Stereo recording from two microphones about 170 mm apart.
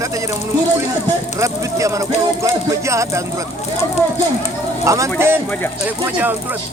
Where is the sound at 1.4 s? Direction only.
20° right (ahead or behind).